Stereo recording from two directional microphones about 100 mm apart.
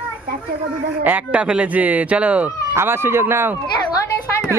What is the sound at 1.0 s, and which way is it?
Speech, 15° right (ahead or behind).